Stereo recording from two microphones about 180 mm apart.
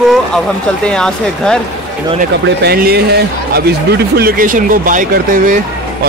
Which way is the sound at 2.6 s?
60° right (ahead or behind).